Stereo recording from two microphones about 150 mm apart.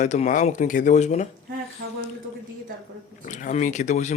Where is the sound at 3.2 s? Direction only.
55° left (ahead or behind).